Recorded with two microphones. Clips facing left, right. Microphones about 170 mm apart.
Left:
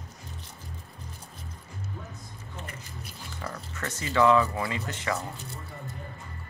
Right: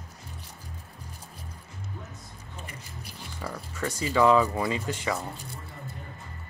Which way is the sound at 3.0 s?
10° right (ahead or behind).